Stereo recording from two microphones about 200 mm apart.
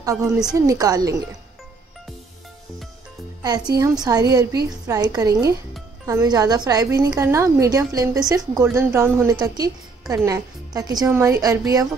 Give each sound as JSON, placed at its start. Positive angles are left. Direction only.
{"t": 0.0, "sound": "a woman's voice", "side_deg": -15}
{"t": 3.4, "sound": "a woman's voice", "side_deg": -20}